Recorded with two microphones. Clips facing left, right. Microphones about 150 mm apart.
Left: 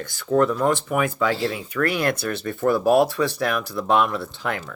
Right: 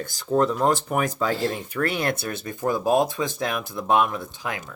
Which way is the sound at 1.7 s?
25° right (ahead or behind).